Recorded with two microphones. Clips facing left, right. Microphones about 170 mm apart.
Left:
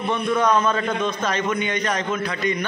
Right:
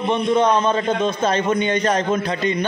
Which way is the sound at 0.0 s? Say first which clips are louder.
Right 4 dB; 20° right (ahead or behind).